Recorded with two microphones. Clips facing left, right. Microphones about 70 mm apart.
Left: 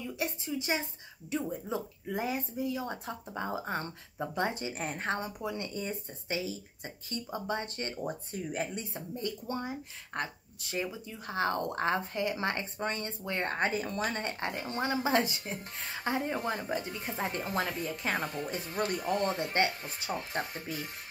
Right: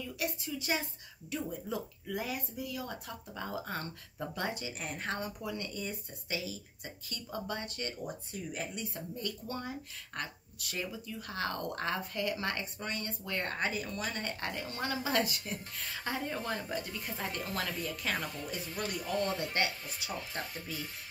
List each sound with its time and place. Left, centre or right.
0.0 s a woman's voice: left